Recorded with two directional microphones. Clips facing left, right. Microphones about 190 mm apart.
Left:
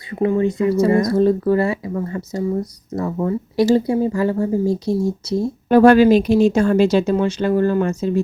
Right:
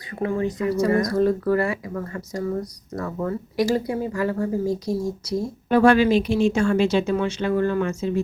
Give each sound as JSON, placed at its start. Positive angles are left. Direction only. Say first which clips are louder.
{"t": 0.1, "sound": "speech", "louder": "left 6 dB", "side_deg": 20}
{"t": 5.6, "sound": "speech", "louder": "left 6 dB", "side_deg": 40}